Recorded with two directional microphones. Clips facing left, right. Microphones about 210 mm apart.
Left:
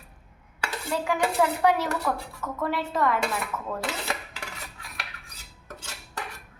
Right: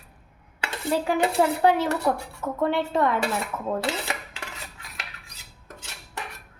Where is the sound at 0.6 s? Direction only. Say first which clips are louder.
Right 4 dB; 30° right (ahead or behind).